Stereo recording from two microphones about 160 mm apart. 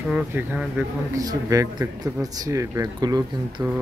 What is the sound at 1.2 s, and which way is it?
Speech, 25° right (ahead or behind).